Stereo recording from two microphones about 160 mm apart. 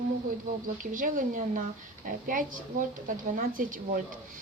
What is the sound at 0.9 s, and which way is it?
A woman's voice, 55° right (ahead or behind).